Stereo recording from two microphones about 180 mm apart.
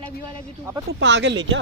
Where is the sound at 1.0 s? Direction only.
80° right.